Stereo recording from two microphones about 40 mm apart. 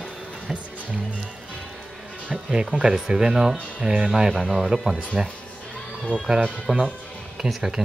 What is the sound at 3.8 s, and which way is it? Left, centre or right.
Speech, right.